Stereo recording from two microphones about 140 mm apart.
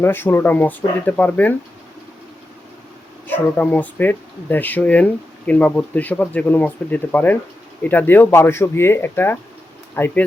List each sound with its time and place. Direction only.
0.0 s speech: 15° left (ahead or behind)
3.2 s speech: 10° left (ahead or behind)